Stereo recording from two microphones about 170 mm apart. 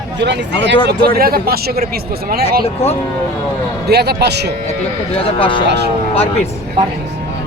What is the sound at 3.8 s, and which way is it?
Speech, 75° right (ahead or behind).